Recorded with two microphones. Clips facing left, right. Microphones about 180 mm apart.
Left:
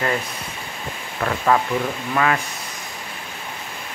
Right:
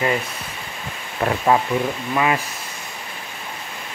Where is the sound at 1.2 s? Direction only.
20° right (ahead or behind).